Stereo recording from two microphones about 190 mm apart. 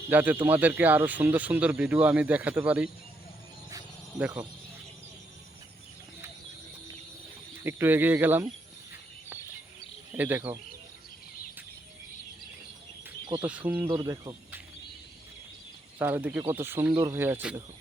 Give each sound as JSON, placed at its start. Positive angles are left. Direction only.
{"t": 0.1, "sound": "speech", "side_deg": -10}
{"t": 7.6, "sound": "speech", "side_deg": -10}
{"t": 10.1, "sound": "speech", "side_deg": -10}
{"t": 13.4, "sound": "speech", "side_deg": -10}
{"t": 13.8, "sound": "speech", "side_deg": -20}
{"t": 16.0, "sound": "speech", "side_deg": -10}